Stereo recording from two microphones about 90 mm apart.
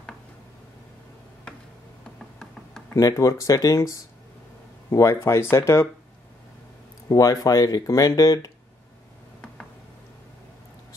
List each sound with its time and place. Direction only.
2.9 s speech: 40° left (ahead or behind)
7.1 s speech: 40° left (ahead or behind)